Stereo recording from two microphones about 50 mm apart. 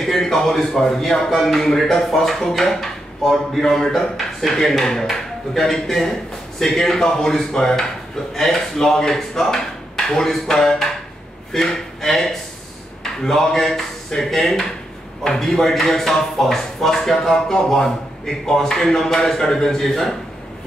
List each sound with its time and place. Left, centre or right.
0.0 s a man's voice: centre